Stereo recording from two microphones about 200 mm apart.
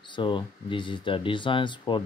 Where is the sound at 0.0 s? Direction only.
25° left (ahead or behind).